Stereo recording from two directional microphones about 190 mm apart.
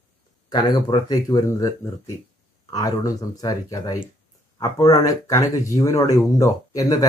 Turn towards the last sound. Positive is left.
turn(degrees=20)  # may be behind; listen again after turning